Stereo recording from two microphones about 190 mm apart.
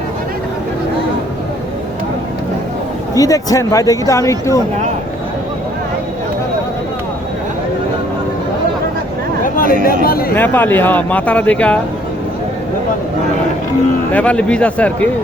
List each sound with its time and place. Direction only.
3.2 s speech: 20° left (ahead or behind)
9.4 s a sound: 50° left (ahead or behind)
9.8 s speech: 50° left (ahead or behind)
10.3 s speech: 10° left (ahead or behind)
14.1 s speech: 5° left (ahead or behind)